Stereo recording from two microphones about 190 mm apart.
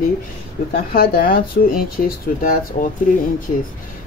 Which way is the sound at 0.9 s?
50° left (ahead or behind).